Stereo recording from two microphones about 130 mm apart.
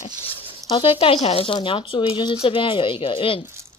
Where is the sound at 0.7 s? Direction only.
40° left (ahead or behind).